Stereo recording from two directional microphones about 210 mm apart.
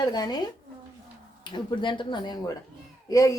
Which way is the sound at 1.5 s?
25° left (ahead or behind).